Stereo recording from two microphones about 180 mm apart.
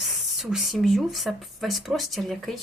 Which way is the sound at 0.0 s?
Centre (ahead or behind).